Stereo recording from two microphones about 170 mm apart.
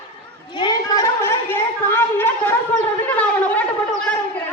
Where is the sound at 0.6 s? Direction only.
20° left (ahead or behind).